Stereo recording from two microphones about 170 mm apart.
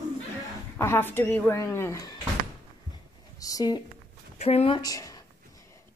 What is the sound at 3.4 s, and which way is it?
Speech, 20° left (ahead or behind).